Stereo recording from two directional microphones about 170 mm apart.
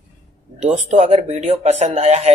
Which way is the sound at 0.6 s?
45° right (ahead or behind).